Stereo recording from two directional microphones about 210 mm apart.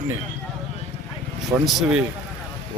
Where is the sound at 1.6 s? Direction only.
Centre (ahead or behind).